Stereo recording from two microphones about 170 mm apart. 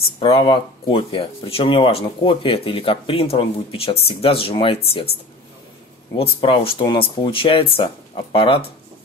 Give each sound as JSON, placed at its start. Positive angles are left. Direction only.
{"t": 0.2, "sound": "speech", "side_deg": 30}
{"t": 6.1, "sound": "speech", "side_deg": 30}